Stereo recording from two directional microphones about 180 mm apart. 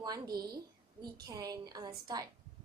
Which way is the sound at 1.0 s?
20° right (ahead or behind).